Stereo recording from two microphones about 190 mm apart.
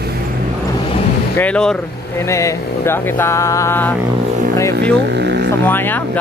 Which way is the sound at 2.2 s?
15° left (ahead or behind).